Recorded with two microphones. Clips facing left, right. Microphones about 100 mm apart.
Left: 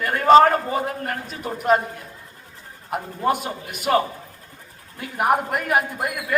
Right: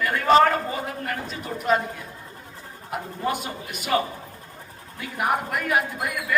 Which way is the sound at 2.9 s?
50° left (ahead or behind).